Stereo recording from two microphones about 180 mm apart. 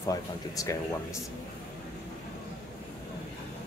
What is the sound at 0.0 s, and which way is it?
Speech, 20° left (ahead or behind).